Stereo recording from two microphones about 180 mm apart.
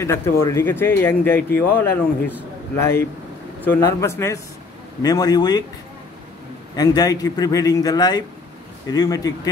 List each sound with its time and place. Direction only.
0.0 s a man's voice: 15° left (ahead or behind)
6.7 s a man's voice: 20° left (ahead or behind)